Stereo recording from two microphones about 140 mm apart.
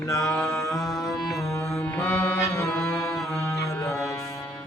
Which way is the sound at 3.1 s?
Centre (ahead or behind).